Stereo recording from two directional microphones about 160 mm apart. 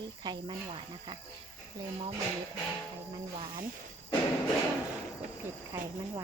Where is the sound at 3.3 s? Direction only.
35° right (ahead or behind).